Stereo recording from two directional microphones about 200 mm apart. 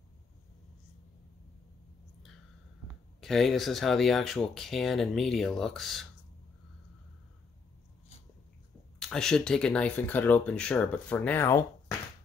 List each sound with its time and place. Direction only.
3.2 s speech: centre (ahead or behind)
9.1 s speech: 5° left (ahead or behind)